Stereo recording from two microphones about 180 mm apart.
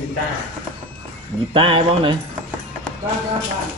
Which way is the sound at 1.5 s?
30° right (ahead or behind).